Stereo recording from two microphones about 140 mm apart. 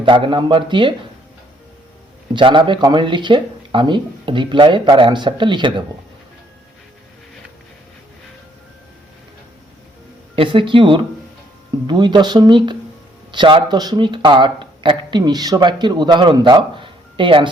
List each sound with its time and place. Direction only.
0.0 s speech: 35° right (ahead or behind)
2.3 s speech: 35° right (ahead or behind)
10.3 s speech: 40° right (ahead or behind)